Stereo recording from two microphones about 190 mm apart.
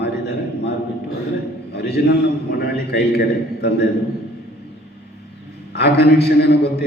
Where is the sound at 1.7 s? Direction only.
60° left (ahead or behind).